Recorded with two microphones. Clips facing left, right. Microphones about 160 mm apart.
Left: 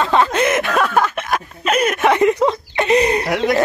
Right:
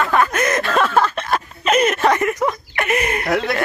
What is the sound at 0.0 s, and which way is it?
Snicker, 25° left (ahead or behind).